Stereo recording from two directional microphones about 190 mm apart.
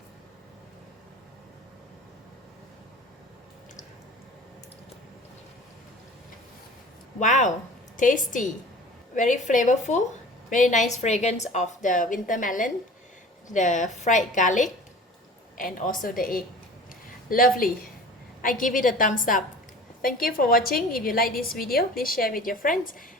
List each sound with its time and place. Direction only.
7.2 s a woman's voice: 40° left (ahead or behind)